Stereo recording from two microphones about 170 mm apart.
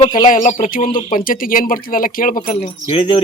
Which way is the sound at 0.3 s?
50° left (ahead or behind).